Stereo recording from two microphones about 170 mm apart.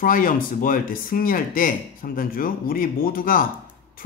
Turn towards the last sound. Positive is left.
turn(degrees=55)  # may be behind; listen again after turning